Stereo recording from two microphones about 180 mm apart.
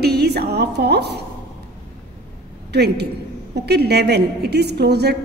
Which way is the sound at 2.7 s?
65° right (ahead or behind).